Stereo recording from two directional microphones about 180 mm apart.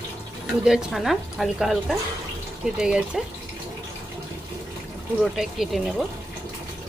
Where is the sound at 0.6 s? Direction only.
Centre (ahead or behind).